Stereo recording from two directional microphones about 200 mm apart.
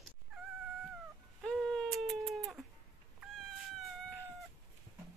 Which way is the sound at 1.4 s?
5° left (ahead or behind).